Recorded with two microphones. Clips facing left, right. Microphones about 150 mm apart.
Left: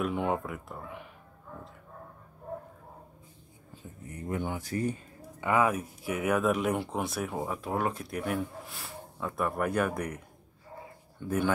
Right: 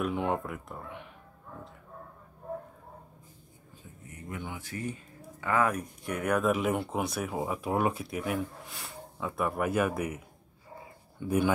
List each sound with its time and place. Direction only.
0.0 s speech: centre (ahead or behind)
4.1 s speech: 35° left (ahead or behind)
5.4 s speech: 15° left (ahead or behind)
5.7 s speech: 5° left (ahead or behind); by 8.0 s 15° right (ahead or behind)
8.0 s speech: centre (ahead or behind)